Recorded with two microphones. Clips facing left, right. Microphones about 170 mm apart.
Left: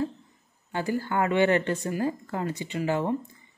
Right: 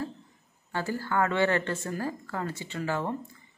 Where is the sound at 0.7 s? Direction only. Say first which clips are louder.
Left 3 dB; 20° left (ahead or behind).